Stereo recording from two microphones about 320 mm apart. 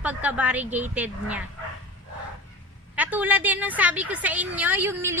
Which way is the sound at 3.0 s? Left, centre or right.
Centre.